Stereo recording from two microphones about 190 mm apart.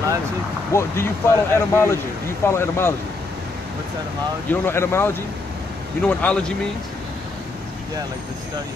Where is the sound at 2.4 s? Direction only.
15° left (ahead or behind).